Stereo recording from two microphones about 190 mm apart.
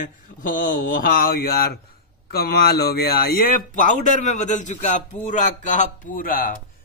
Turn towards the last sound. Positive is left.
turn(degrees=50)  # may be behind; listen again after turning